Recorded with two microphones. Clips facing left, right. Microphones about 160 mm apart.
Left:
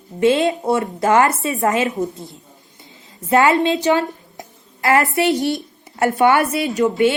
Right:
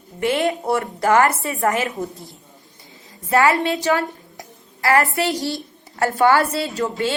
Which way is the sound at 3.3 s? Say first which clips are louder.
Left 3 dB; 20° left (ahead or behind).